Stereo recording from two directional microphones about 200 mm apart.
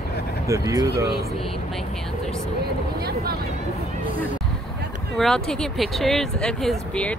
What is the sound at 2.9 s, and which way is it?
Vehicle, 50° right (ahead or behind).